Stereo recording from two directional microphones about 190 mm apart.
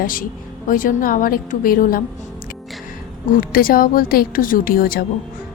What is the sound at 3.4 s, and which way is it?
Speech, 50° left (ahead or behind).